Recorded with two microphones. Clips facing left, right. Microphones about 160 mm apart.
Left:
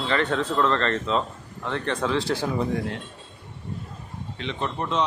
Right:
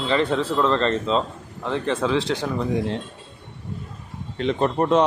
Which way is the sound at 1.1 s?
30° right (ahead or behind).